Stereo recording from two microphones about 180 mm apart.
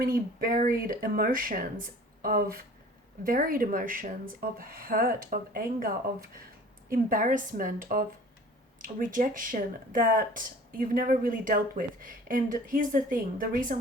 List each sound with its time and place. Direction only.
0.0 s speech: 55° right (ahead or behind)
6.9 s speech: 50° right (ahead or behind)